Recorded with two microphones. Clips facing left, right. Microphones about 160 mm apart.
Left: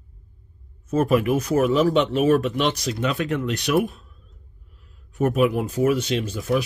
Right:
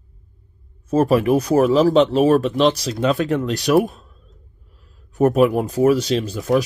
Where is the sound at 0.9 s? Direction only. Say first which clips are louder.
Right 4 dB; 30° right (ahead or behind).